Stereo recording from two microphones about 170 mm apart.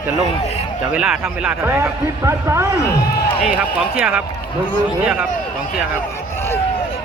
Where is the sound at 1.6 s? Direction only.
15° right (ahead or behind).